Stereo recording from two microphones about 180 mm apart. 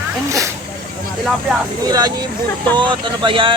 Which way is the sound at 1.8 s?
20° right (ahead or behind).